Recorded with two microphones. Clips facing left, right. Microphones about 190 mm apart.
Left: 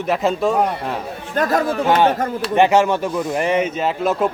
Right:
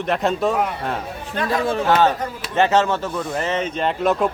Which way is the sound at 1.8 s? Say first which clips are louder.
Left 1 dB; 15° left (ahead or behind).